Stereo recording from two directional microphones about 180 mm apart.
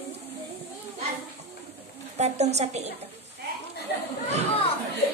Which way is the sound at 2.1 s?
40° right (ahead or behind).